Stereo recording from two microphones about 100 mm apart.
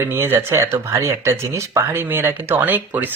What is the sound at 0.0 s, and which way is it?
Speech, 25° right (ahead or behind).